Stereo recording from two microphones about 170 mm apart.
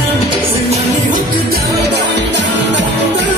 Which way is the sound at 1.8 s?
90° right.